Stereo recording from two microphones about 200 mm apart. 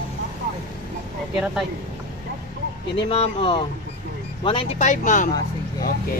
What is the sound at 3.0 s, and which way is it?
Speech, 30° left (ahead or behind).